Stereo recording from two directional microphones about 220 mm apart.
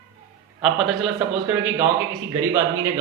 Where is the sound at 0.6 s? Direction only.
Centre (ahead or behind).